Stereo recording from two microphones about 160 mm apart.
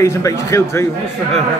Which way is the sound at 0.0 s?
20° left (ahead or behind).